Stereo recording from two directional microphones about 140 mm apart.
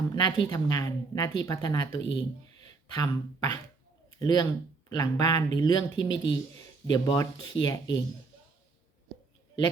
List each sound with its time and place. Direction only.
0.1 s speech: 30° left (ahead or behind)